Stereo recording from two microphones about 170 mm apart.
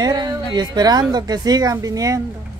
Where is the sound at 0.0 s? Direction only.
25° right (ahead or behind).